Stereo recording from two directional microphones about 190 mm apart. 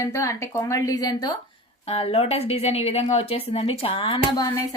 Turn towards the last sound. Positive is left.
turn(degrees=30)  # may be behind; listen again after turning